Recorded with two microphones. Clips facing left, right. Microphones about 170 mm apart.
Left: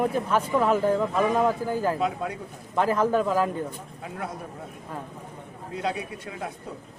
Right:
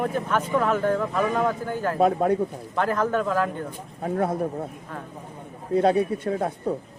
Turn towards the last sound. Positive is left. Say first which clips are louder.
# right 10 dB
turn(degrees=-55)  # may be behind; listen again after turning